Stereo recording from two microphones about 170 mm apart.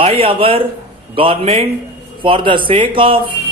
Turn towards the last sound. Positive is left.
turn(degrees=-30)  # may be behind; listen again after turning